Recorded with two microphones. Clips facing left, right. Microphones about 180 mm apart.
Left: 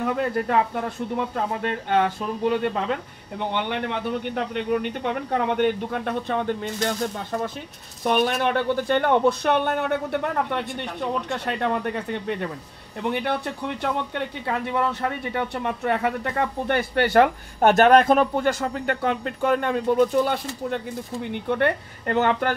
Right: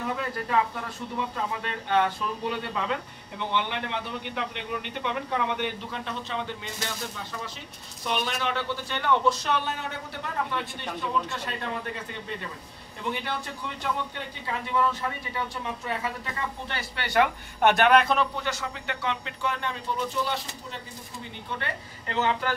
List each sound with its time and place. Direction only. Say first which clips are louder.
0.0 s speech: left 7 dB; 55° left (ahead or behind)